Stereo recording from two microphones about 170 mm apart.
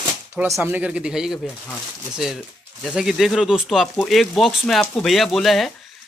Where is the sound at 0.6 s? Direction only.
10° right (ahead or behind).